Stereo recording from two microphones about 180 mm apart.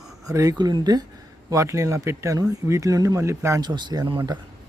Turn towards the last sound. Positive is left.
turn(degrees=-25)  # may be behind; listen again after turning